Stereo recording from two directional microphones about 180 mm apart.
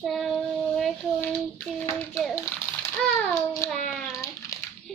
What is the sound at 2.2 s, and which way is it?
Speech, 10° left (ahead or behind).